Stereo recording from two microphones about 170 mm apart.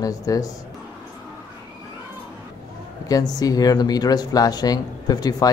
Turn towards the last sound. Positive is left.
turn(degrees=20)  # may be behind; listen again after turning